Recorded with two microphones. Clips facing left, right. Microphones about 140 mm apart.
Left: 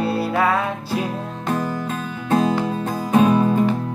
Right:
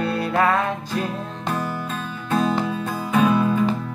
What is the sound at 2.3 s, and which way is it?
Music, 40° left (ahead or behind).